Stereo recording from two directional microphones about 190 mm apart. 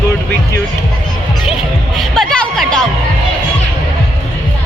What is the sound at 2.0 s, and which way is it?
Music, 5° left (ahead or behind).